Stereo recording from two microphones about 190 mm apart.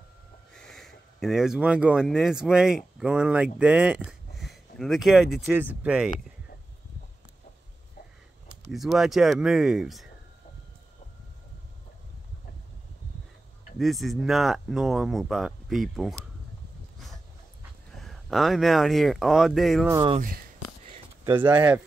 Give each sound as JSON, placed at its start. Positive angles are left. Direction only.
{"t": 0.5, "sound": "speech", "side_deg": 5}
{"t": 8.7, "sound": "speech", "side_deg": 0}
{"t": 13.7, "sound": "speech", "side_deg": 0}
{"t": 17.9, "sound": "speech", "side_deg": 0}
{"t": 19.9, "sound": "speech", "side_deg": -25}
{"t": 21.3, "sound": "speech", "side_deg": -10}